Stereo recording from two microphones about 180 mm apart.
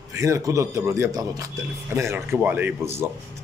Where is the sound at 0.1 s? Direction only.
15° right (ahead or behind).